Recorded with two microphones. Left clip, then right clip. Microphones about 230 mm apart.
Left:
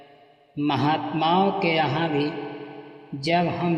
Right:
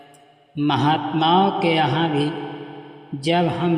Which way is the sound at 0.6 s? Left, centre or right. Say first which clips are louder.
Right 4 dB; right.